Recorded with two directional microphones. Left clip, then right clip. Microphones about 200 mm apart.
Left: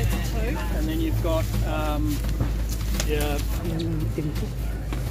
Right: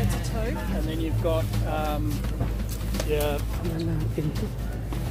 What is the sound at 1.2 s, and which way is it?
Speech, 40° right (ahead or behind).